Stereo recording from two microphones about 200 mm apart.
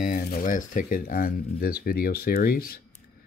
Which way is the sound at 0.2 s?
45° left (ahead or behind).